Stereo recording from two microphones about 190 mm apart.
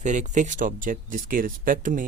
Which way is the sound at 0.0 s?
40° right (ahead or behind).